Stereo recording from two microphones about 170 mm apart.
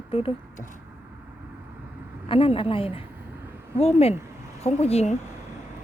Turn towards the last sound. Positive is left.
turn(degrees=40)  # may be behind; listen again after turning